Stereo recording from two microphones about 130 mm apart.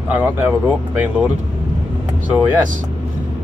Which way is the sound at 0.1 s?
15° right (ahead or behind).